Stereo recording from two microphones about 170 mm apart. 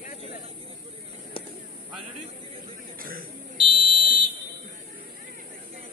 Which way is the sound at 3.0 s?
60° right (ahead or behind).